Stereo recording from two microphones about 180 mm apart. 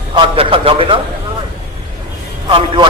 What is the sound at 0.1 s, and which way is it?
Speech, 30° right (ahead or behind).